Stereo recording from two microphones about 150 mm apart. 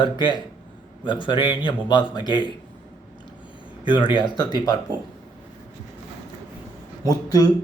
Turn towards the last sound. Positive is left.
turn(degrees=25)  # may be behind; listen again after turning